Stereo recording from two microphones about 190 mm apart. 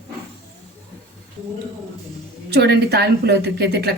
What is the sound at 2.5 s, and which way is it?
A woman's voice, 60° right (ahead or behind).